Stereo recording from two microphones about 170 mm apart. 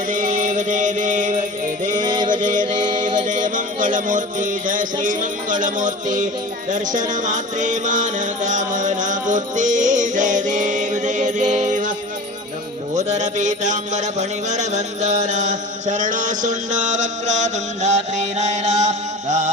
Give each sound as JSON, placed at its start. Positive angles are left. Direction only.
{"t": 0.1, "sound": "music", "side_deg": -50}
{"t": 2.0, "sound": "music", "side_deg": -25}
{"t": 2.3, "sound": "music", "side_deg": -50}
{"t": 2.7, "sound": "music", "side_deg": -25}
{"t": 3.2, "sound": "music", "side_deg": -50}
{"t": 13.0, "sound": "music", "side_deg": -45}